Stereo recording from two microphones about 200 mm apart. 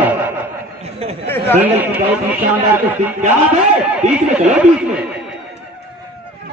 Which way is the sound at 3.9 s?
5° right (ahead or behind).